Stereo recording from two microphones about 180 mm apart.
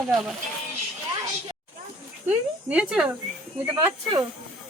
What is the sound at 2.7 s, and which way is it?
Speech, 5° right (ahead or behind).